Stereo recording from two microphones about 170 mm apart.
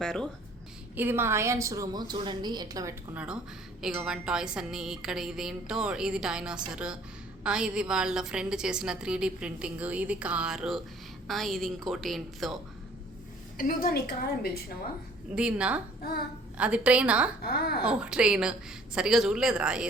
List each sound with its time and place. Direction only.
0.0 s a woman's voice: 5° left (ahead or behind)
0.9 s a woman's voice: 15° right (ahead or behind)
3.8 s a woman's voice: 5° right (ahead or behind)
13.6 s a woman's voice: 55° left (ahead or behind)
15.4 s a woman's voice: 5° right (ahead or behind)
17.4 s a woman's voice: 65° left (ahead or behind)
17.8 s a woman's voice: 5° right (ahead or behind)